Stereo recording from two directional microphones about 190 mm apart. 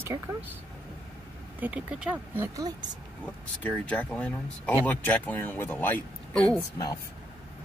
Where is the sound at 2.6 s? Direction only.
20° right (ahead or behind).